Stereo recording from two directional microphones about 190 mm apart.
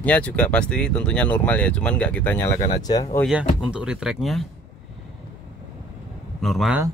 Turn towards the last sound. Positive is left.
turn(degrees=0)  # may be behind; listen again after turning